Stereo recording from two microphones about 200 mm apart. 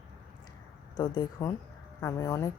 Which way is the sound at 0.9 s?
20° left (ahead or behind).